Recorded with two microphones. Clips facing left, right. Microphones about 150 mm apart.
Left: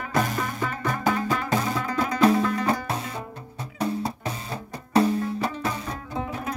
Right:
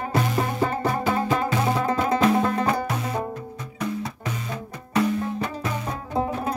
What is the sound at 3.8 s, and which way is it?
Music, 30° left (ahead or behind).